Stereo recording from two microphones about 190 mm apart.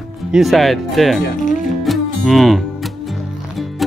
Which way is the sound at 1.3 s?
45° left (ahead or behind).